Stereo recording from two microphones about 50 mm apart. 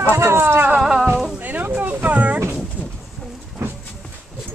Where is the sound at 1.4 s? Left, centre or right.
Right.